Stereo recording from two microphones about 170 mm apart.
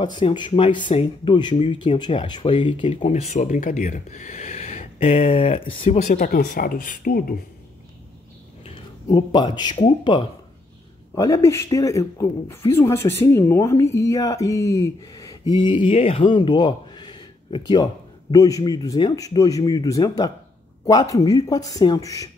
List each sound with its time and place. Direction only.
0.0 s speech: 25° left (ahead or behind)
2.9 s speech: 40° left (ahead or behind)
6.1 s speech: 55° left (ahead or behind)
8.6 s speech: 35° left (ahead or behind); by 22.3 s 20° left (ahead or behind)